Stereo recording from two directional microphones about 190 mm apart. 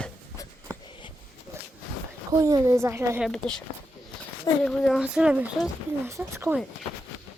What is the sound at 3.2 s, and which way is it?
Speech, 5° left (ahead or behind).